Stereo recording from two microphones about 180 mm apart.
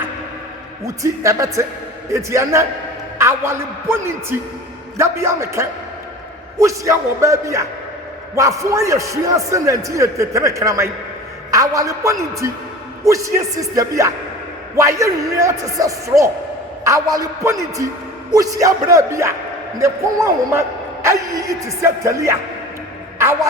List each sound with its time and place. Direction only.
0.9 s a man's voice: 15° right (ahead or behind)